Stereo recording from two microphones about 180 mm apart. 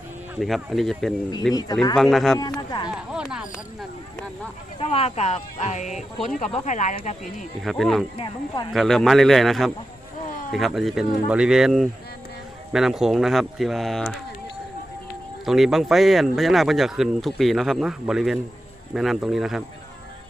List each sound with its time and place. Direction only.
0.3 s speech: centre (ahead or behind)
1.5 s speech: 20° left (ahead or behind)
2.0 s speech: centre (ahead or behind)
2.6 s speech: 25° left (ahead or behind)
2.9 s speech: centre (ahead or behind)
4.8 s speech: 35° left (ahead or behind)
7.6 s speech: centre (ahead or behind)
8.1 s speech: 25° left (ahead or behind)
8.7 s speech: centre (ahead or behind)
15.4 s speech: centre (ahead or behind)